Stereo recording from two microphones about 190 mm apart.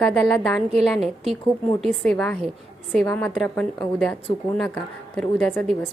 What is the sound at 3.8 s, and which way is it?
Speech, centre (ahead or behind).